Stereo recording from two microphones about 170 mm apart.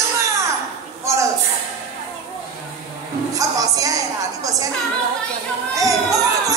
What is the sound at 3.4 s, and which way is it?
A woman's voice, 20° right (ahead or behind).